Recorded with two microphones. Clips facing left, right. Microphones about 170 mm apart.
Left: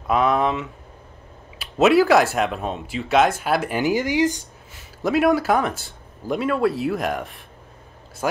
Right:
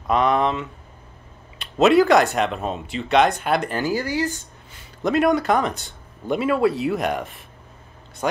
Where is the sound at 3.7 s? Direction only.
20° left (ahead or behind).